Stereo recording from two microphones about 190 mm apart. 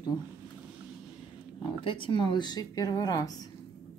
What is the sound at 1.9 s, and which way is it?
Speech, 25° left (ahead or behind).